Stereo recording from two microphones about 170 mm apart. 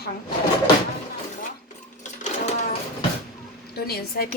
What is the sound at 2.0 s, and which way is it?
Sewing machine, 45° left (ahead or behind).